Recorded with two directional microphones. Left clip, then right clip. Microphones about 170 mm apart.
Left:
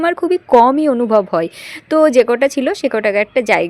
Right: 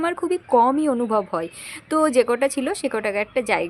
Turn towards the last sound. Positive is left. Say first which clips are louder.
# left 8 dB
turn(degrees=30)  # may be behind; listen again after turning